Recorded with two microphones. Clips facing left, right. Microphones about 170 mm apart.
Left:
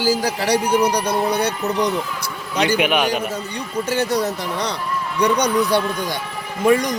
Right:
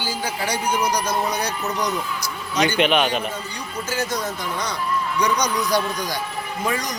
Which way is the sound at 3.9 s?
30° left (ahead or behind).